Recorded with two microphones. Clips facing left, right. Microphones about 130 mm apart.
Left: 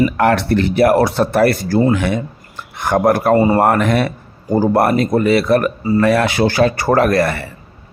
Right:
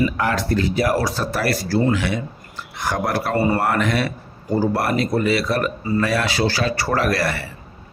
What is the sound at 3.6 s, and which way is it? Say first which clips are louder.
Speech: left 6 dB; 50° left (ahead or behind).